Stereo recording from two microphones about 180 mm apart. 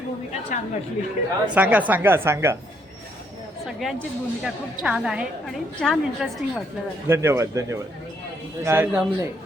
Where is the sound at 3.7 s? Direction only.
Centre (ahead or behind).